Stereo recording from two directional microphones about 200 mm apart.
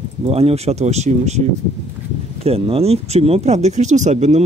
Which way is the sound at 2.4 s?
30° right (ahead or behind).